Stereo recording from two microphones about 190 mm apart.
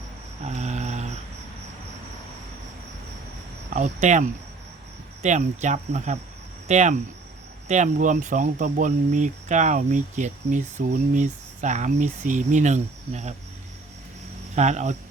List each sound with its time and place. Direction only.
0.4 s a sound: 35° right (ahead or behind)
3.8 s speech: 40° right (ahead or behind)
14.5 s speech: 35° right (ahead or behind)